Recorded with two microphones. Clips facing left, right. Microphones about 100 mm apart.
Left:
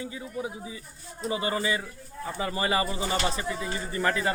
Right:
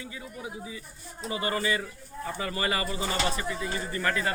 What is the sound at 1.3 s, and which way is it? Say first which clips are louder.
Speech: left 1 dB; 25° left (ahead or behind).